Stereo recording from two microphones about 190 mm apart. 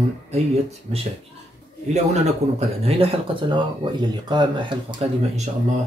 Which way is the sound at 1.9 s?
35° right (ahead or behind).